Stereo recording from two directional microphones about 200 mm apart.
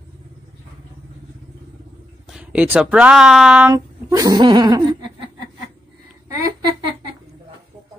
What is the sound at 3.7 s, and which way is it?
Speech, 15° right (ahead or behind).